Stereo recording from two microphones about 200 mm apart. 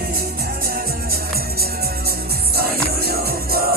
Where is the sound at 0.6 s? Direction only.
50° right (ahead or behind).